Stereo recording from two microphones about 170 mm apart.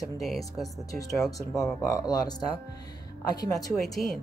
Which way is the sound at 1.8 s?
20° left (ahead or behind).